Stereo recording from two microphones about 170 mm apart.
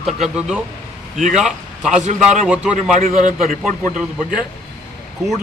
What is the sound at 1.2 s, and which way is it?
Speech, 45° right (ahead or behind).